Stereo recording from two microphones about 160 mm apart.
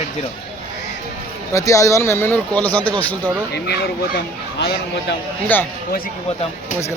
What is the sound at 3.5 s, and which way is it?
Speech, 90° left.